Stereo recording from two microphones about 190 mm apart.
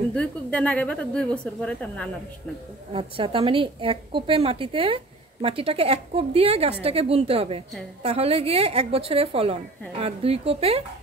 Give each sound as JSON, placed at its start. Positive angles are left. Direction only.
{"t": 0.1, "sound": "speech", "side_deg": 5}
{"t": 2.9, "sound": "a woman's voice", "side_deg": -30}